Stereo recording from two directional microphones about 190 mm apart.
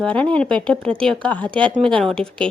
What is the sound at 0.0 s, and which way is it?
Speech, 5° left (ahead or behind).